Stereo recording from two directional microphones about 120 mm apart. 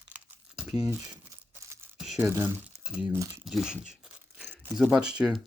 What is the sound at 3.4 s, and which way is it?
Speech, 5° right (ahead or behind).